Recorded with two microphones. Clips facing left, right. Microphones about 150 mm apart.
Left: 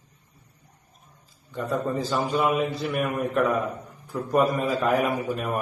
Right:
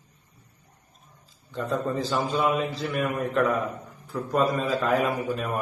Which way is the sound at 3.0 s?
15° left (ahead or behind).